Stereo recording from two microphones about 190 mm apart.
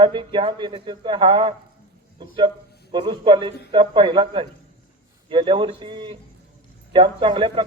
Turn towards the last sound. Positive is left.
turn(degrees=-25)  # may be behind; listen again after turning